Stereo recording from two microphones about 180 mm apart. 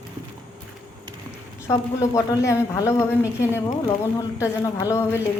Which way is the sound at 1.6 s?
15° left (ahead or behind).